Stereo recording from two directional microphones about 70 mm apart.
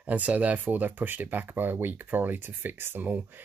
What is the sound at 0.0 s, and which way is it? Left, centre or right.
Speech, right.